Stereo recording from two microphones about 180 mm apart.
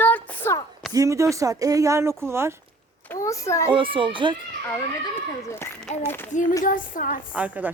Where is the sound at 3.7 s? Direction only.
30° right (ahead or behind).